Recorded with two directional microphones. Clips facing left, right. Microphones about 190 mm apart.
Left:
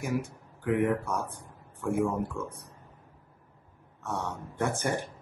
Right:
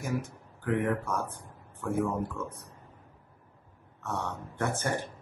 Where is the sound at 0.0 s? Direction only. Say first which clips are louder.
Left 2 dB; 15° left (ahead or behind).